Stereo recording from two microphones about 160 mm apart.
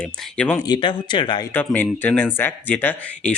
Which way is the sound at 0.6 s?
25° left (ahead or behind).